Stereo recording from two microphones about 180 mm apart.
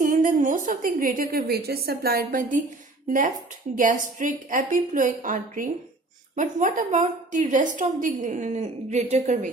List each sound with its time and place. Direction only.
0.0 s a woman's voice: 45° right (ahead or behind)
3.8 s a woman's voice: 45° right (ahead or behind)